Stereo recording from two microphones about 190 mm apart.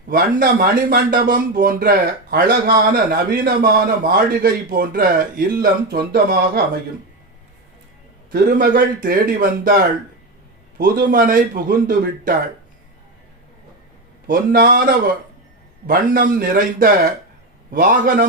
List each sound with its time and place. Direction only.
0.1 s speech: 50° right (ahead or behind)
8.3 s speech: 50° right (ahead or behind)
14.3 s speech: 50° right (ahead or behind)